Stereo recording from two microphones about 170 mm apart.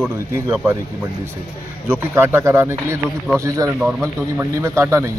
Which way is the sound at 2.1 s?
15° right (ahead or behind).